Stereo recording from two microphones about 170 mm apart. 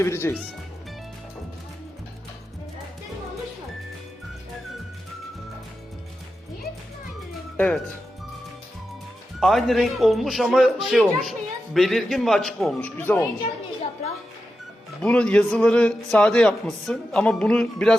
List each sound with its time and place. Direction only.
0.0 s speech: 15° left (ahead or behind)
7.5 s speech: 5° left (ahead or behind)
9.4 s a man's voice: centre (ahead or behind)
14.0 s music: 40° left (ahead or behind)
15.0 s a man's voice: 5° left (ahead or behind)